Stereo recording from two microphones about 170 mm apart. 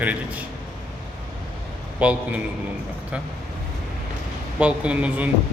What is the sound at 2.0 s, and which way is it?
Speech, 10° right (ahead or behind).